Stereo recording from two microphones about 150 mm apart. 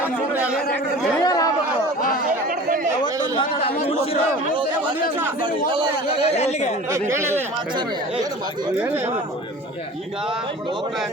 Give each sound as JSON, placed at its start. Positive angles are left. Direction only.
{"t": 0.0, "sound": "a sound", "side_deg": -10}
{"t": 1.2, "sound": "speech", "side_deg": 25}
{"t": 3.0, "sound": "chatter", "side_deg": 35}
{"t": 5.4, "sound": "a man's voice", "side_deg": -30}
{"t": 6.2, "sound": "speech", "side_deg": 45}
{"t": 6.9, "sound": "speech", "side_deg": -15}